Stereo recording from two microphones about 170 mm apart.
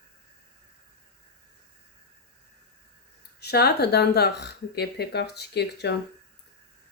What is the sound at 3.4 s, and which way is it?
Speech, 70° left (ahead or behind).